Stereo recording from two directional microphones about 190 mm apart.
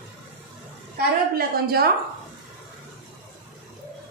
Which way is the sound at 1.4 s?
55° right (ahead or behind).